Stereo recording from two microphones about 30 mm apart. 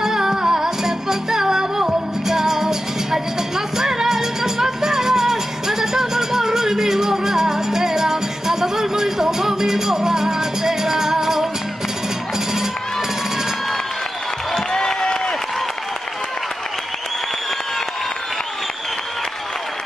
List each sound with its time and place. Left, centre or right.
0.0 s music: centre
14.5 s a sound: left
15.0 s applause: left